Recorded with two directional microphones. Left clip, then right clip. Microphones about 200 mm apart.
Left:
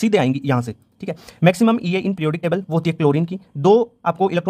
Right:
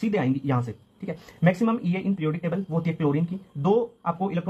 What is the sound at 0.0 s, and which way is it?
Speech, 45° left (ahead or behind).